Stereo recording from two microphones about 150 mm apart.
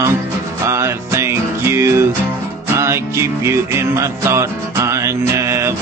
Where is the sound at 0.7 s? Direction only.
20° right (ahead or behind).